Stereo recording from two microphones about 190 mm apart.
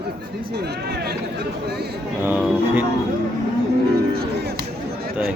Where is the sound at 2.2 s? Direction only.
10° right (ahead or behind).